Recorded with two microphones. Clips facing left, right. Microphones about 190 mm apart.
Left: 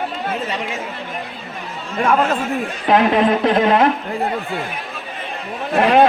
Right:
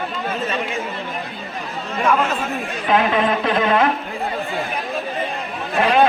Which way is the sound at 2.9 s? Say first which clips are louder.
Left 3 dB; 40° left (ahead or behind).